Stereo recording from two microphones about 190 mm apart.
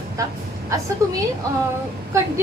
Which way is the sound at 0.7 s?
15° right (ahead or behind).